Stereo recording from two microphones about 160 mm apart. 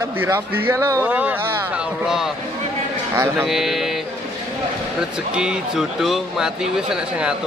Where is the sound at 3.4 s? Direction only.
Centre (ahead or behind).